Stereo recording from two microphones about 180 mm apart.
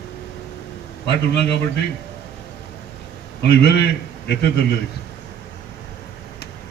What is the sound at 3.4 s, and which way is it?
Speech, 65° left (ahead or behind).